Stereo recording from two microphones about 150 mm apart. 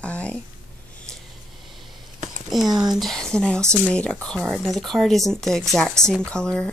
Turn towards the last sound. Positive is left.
turn(degrees=5)  # may be behind; listen again after turning